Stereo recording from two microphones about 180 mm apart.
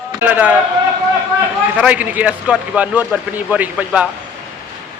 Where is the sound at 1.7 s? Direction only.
5° right (ahead or behind).